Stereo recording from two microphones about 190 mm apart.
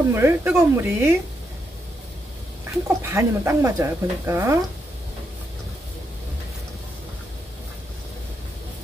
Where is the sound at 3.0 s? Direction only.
15° right (ahead or behind).